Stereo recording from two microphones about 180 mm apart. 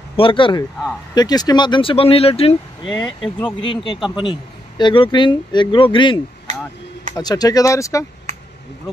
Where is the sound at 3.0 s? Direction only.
5° left (ahead or behind).